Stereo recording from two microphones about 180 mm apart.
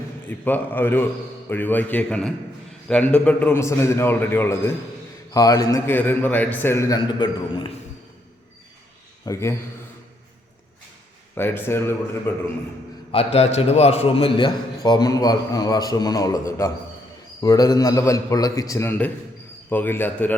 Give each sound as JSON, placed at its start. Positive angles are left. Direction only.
{"t": 0.3, "sound": "a man's voice", "side_deg": 10}
{"t": 9.2, "sound": "a man's voice", "side_deg": 15}
{"t": 11.3, "sound": "a man's voice", "side_deg": 10}
{"t": 13.1, "sound": "a man's voice", "side_deg": 35}